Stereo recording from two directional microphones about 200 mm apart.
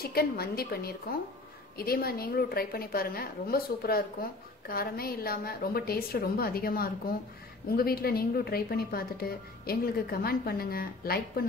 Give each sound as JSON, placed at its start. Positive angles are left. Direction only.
{"t": 0.0, "sound": "a woman's voice", "side_deg": 50}